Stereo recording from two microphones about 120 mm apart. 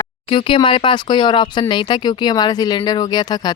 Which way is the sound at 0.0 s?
45° left (ahead or behind).